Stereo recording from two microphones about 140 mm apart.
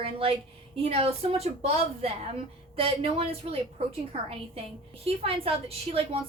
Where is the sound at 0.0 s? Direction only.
40° right (ahead or behind).